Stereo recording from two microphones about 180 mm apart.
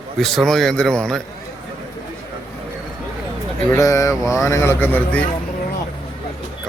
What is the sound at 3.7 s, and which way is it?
Speech, 15° left (ahead or behind).